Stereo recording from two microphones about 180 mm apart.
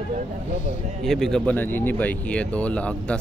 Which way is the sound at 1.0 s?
Centre (ahead or behind).